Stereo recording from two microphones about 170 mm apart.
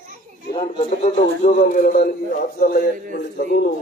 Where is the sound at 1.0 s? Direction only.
45° left (ahead or behind).